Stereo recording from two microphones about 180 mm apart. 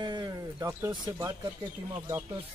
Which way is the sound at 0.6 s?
10° right (ahead or behind).